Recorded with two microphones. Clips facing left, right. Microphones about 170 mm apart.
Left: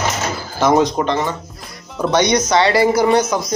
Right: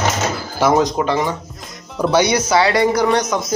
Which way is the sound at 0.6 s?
10° right (ahead or behind).